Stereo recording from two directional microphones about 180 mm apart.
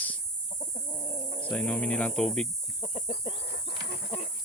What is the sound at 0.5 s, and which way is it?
Chicken, 45° left (ahead or behind).